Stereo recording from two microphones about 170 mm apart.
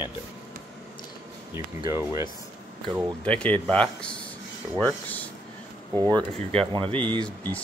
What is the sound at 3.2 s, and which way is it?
Speech, 10° left (ahead or behind).